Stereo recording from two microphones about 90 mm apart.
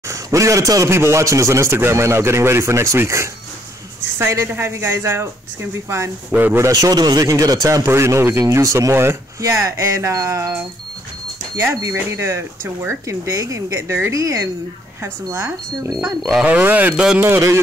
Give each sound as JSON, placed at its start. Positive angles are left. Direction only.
{"t": 0.1, "sound": "speech", "side_deg": -35}
{"t": 6.7, "sound": "speech", "side_deg": -45}
{"t": 11.7, "sound": "speech", "side_deg": -35}
{"t": 16.3, "sound": "speech", "side_deg": -10}
{"t": 17.2, "sound": "speech", "side_deg": -30}